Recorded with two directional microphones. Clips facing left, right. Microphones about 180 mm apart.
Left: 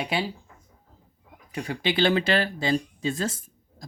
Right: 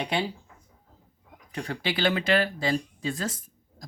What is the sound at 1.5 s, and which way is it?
Speech, 10° left (ahead or behind).